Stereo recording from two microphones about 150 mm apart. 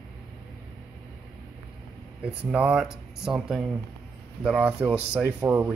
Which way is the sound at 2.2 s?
10° right (ahead or behind).